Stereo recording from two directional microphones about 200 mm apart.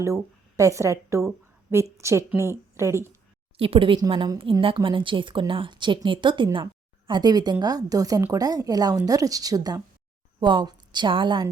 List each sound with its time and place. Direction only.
0.0 s a woman's voice: 15° right (ahead or behind)
3.6 s a woman's voice: 25° right (ahead or behind)